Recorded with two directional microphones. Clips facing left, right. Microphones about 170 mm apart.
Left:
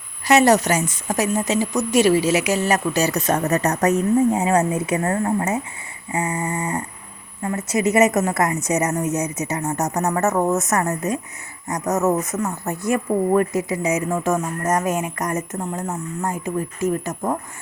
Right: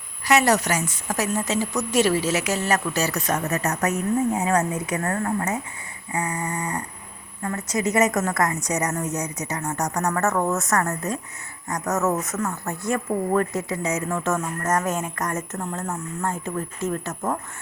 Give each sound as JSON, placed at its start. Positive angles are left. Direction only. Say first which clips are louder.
{"t": 0.3, "sound": "a woman's voice", "louder": "left 4 dB", "side_deg": 25}
{"t": 3.4, "sound": "speech", "louder": "left 5 dB", "side_deg": 40}
{"t": 4.3, "sound": "a woman's voice", "louder": "left 4 dB", "side_deg": 25}